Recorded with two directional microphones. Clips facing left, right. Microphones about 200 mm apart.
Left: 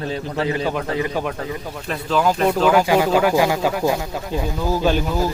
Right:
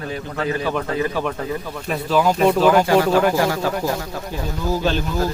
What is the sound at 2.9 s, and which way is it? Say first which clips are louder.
Speech: right 1 dB; 15° left (ahead or behind).